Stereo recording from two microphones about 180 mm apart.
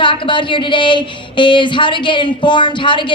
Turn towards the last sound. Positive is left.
turn(degrees=25)  # may be behind; listen again after turning